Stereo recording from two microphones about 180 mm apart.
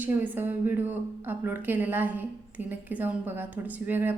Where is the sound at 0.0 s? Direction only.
10° right (ahead or behind).